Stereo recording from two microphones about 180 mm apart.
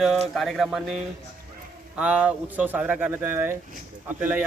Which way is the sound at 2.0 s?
5° right (ahead or behind).